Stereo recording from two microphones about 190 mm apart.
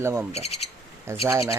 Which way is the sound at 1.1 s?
15° right (ahead or behind).